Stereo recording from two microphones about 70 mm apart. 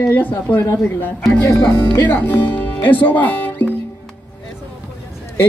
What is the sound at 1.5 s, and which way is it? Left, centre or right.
Speech, left.